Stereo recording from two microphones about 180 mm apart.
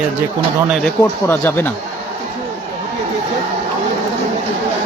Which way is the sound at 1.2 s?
10° left (ahead or behind).